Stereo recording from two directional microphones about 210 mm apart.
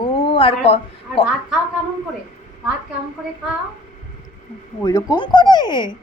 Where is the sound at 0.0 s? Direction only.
25° left (ahead or behind).